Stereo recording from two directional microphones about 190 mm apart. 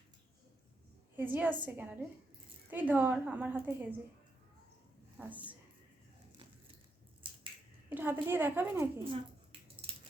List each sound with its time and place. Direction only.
1.1 s a woman's voice: 10° right (ahead or behind)
5.1 s speech: 10° right (ahead or behind)
7.9 s a woman's voice: 10° right (ahead or behind)